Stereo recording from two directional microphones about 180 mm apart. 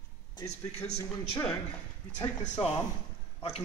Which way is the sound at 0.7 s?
40° left (ahead or behind).